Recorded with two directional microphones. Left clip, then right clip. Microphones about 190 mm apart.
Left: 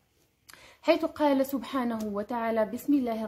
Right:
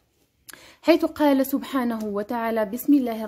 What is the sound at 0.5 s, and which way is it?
A woman's voice, 40° right (ahead or behind).